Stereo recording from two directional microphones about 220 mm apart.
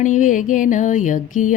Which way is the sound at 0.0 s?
35° left (ahead or behind).